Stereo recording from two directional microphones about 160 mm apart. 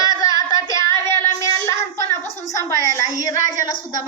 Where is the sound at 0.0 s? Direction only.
20° left (ahead or behind).